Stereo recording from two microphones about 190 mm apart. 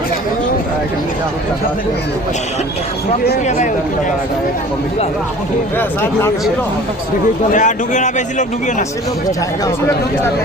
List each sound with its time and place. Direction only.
5.7 s speech: 10° left (ahead or behind)
7.5 s a man's voice: 40° left (ahead or behind)